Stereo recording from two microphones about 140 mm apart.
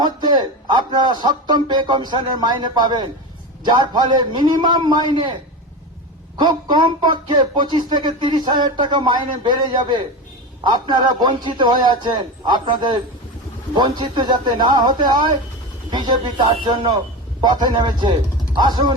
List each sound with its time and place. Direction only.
0.0 s speech: 30° right (ahead or behind)
6.5 s speech: 30° right (ahead or behind)